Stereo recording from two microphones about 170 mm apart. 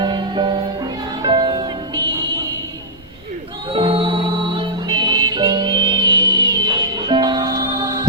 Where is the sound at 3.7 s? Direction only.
30° right (ahead or behind).